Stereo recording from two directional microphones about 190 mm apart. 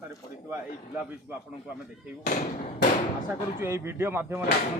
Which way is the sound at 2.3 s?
50° left (ahead or behind).